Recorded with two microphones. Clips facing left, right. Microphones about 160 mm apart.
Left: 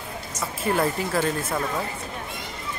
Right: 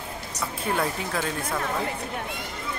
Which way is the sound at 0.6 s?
5° left (ahead or behind).